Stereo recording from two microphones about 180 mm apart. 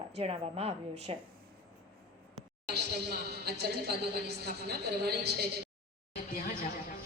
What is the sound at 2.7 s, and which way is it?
A woman's voice, 65° right (ahead or behind).